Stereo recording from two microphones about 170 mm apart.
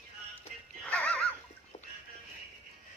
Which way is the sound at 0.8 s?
5° left (ahead or behind).